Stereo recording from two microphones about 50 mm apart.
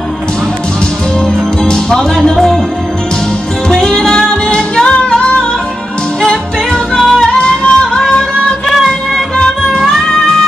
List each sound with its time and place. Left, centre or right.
1.2 s music: centre
3.6 s music: centre
6.2 s music: centre